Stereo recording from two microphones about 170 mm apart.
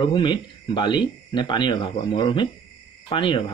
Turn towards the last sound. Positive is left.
turn(degrees=30)  # may be behind; listen again after turning